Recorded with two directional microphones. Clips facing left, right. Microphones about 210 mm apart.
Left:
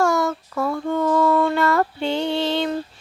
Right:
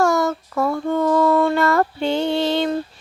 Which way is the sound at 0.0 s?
40° right (ahead or behind).